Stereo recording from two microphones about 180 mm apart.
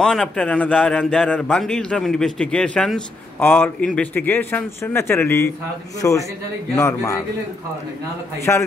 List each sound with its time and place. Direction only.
0.0 s a man's voice: 5° left (ahead or behind)
8.5 s a man's voice: 15° left (ahead or behind)